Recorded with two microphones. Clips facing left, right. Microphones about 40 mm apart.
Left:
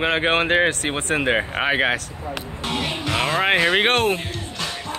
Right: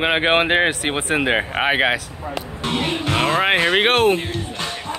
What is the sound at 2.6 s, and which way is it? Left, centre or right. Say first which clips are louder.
Music: right 3 dB; centre.